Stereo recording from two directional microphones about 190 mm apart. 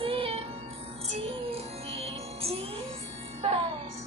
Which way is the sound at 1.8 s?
30° right (ahead or behind).